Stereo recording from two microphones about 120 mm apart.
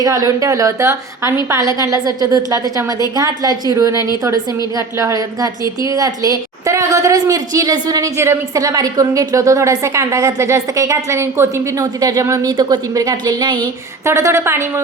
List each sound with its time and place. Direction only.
0.0 s a woman's voice: 30° right (ahead or behind)
4.9 s a woman's voice: 30° right (ahead or behind)
14.0 s a woman's voice: 20° right (ahead or behind)